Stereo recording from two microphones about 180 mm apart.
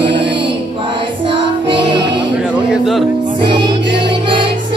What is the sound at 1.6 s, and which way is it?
Music, 25° right (ahead or behind).